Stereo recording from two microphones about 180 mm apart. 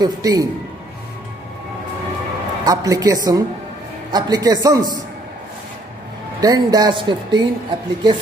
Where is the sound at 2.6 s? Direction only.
20° right (ahead or behind).